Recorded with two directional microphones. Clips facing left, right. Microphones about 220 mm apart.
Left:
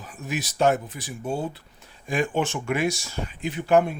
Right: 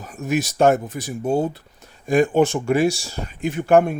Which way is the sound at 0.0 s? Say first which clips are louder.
Right 8 dB; 45° right (ahead or behind).